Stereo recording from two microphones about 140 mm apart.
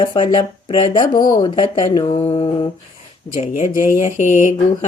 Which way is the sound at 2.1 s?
45° left (ahead or behind).